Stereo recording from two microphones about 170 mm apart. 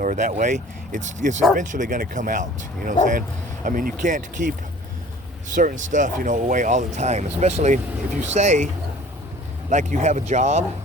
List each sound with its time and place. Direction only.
0.0 s speech: 50° right (ahead or behind)
5.5 s speech: 50° right (ahead or behind)